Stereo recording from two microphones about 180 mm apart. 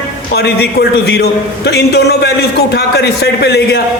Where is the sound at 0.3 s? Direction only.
65° left (ahead or behind).